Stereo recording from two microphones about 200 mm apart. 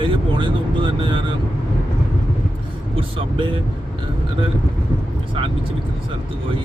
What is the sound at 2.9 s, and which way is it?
Speech, 25° right (ahead or behind).